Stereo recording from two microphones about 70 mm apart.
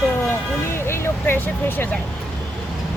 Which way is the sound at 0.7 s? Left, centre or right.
Left.